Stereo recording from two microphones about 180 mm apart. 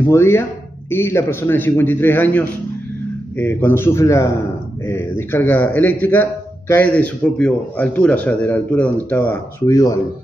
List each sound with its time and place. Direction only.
0.1 s a man's voice: 15° left (ahead or behind)